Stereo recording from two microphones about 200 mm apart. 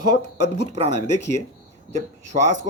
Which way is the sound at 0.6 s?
35° right (ahead or behind).